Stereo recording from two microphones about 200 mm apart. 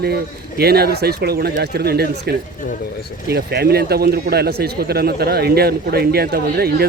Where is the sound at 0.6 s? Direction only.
50° right (ahead or behind).